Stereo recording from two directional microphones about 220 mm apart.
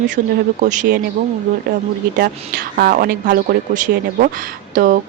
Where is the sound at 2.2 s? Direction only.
40° right (ahead or behind).